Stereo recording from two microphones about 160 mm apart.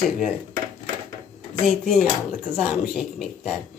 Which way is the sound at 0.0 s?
5° left (ahead or behind).